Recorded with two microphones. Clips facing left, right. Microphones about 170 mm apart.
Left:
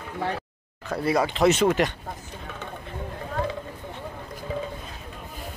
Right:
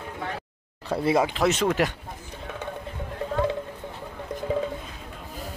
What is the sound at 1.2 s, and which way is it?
Speech, centre (ahead or behind).